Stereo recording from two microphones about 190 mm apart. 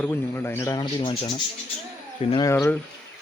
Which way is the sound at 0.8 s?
25° left (ahead or behind).